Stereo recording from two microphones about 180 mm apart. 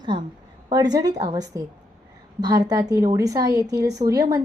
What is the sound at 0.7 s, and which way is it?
A woman's voice, 20° right (ahead or behind).